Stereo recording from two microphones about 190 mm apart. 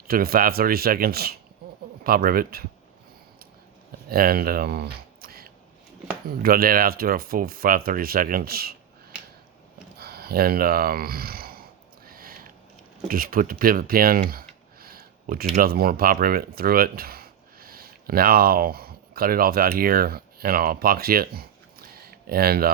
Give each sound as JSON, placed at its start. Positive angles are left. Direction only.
{"t": 0.1, "sound": "speech", "side_deg": -50}
{"t": 4.1, "sound": "speech", "side_deg": -50}
{"t": 10.0, "sound": "speech", "side_deg": -55}
{"t": 12.0, "sound": "a sound", "side_deg": -50}
{"t": 13.1, "sound": "speech", "side_deg": -50}